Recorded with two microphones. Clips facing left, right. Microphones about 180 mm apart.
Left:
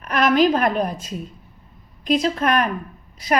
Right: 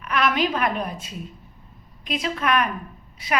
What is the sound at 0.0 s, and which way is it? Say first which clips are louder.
A woman's voice: left 6 dB; 40° left (ahead or behind).